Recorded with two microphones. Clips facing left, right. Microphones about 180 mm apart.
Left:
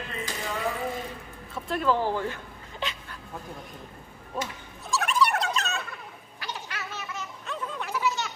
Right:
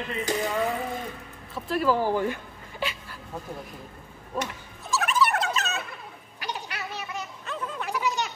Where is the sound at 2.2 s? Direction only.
10° right (ahead or behind).